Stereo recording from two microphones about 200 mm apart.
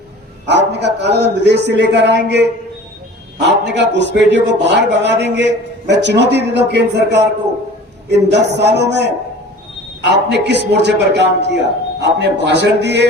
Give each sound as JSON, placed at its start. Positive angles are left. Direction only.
{"t": 0.4, "sound": "a man's voice", "side_deg": -60}